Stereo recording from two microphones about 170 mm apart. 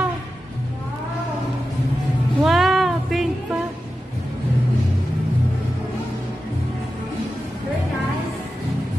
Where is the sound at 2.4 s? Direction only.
Centre (ahead or behind).